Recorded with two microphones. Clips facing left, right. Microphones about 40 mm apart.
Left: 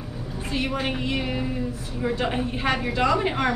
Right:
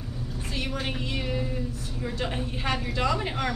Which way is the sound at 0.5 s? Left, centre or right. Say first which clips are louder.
Left 6 dB; centre.